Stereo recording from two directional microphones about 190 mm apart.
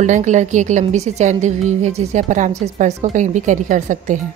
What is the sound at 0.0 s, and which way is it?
A woman's voice, 40° right (ahead or behind).